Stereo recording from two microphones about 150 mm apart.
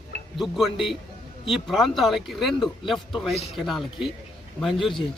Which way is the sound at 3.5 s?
Centre (ahead or behind).